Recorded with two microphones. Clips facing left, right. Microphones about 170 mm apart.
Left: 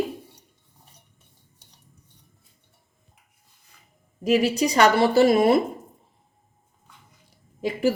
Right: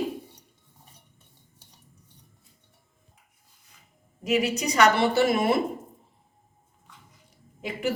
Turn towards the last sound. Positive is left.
turn(degrees=35)  # may be behind; listen again after turning